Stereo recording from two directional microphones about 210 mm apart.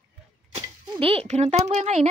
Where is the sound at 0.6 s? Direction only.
25° right (ahead or behind).